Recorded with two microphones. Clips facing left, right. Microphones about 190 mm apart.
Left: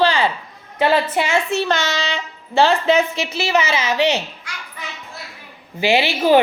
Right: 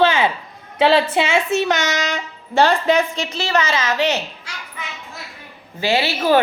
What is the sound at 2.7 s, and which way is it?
Speech, 5° left (ahead or behind).